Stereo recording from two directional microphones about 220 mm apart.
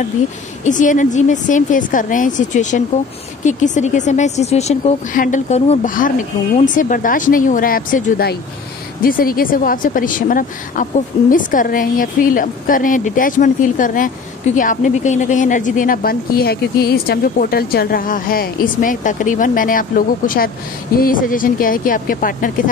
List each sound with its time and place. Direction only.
0.7 s a woman's voice: 35° left (ahead or behind)